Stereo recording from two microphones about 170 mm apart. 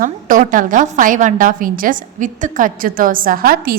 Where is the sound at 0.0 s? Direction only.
50° right (ahead or behind).